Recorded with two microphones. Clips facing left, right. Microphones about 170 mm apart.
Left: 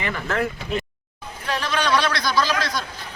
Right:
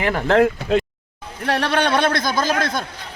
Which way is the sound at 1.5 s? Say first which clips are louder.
Right 4 dB; 65° right (ahead or behind).